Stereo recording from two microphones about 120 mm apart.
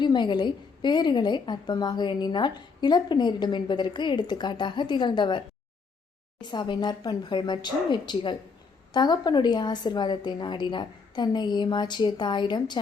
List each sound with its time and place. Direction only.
0.0 s a woman's voice: 40° left (ahead or behind)
6.4 s a woman's voice: 40° left (ahead or behind)